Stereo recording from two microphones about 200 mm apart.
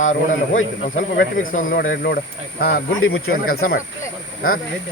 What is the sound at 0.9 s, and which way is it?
Speech, 60° left (ahead or behind).